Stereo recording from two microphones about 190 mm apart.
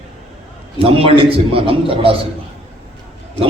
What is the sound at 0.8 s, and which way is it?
A man's voice, 30° right (ahead or behind).